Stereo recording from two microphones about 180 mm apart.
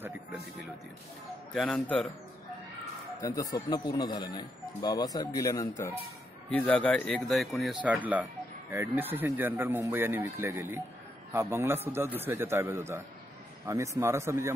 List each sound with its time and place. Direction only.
1.5 s speech: 5° left (ahead or behind)
3.2 s speech: 20° left (ahead or behind); by 14.5 s 15° right (ahead or behind)